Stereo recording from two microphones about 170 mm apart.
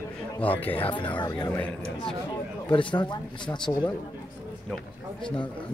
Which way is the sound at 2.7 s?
30° left (ahead or behind).